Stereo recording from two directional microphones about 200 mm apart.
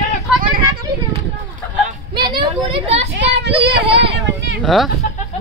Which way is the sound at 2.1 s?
25° right (ahead or behind).